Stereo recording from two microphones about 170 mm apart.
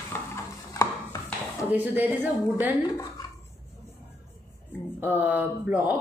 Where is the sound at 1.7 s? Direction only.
10° right (ahead or behind).